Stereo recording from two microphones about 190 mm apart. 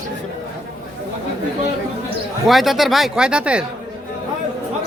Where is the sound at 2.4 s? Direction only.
Centre (ahead or behind).